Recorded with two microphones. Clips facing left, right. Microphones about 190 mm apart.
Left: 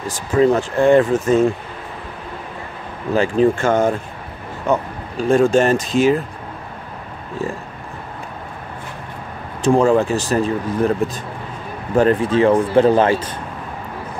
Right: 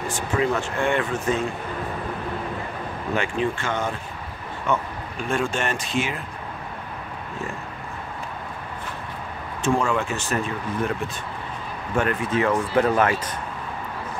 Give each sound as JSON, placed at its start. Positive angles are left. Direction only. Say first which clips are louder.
{"t": 0.1, "sound": "speech", "louder": "left 9 dB", "side_deg": 35}
{"t": 3.2, "sound": "speech", "louder": "left 10 dB", "side_deg": 40}
{"t": 9.6, "sound": "speech", "louder": "left 9 dB", "side_deg": 35}
{"t": 11.9, "sound": "speech", "louder": "left 8 dB", "side_deg": 35}